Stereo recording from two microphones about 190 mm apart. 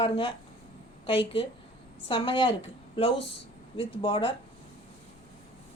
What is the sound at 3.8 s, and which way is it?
Speech, 25° left (ahead or behind).